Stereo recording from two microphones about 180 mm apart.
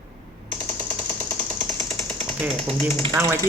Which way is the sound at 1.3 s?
15° left (ahead or behind).